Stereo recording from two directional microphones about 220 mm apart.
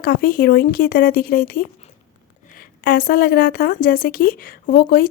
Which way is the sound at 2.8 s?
45° left (ahead or behind).